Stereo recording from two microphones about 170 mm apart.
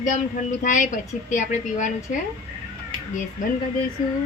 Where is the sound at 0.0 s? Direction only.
50° left (ahead or behind).